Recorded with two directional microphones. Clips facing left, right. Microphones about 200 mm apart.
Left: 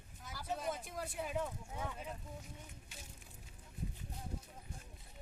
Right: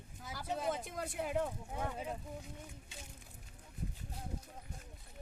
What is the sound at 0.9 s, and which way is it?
Speech, 75° right (ahead or behind).